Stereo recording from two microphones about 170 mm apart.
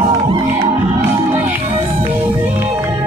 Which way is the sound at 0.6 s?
15° right (ahead or behind).